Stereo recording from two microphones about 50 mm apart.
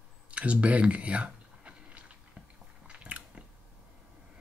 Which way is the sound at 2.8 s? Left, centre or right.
Right.